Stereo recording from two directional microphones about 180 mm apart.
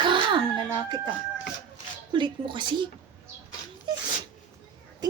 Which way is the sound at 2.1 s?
25° right (ahead or behind).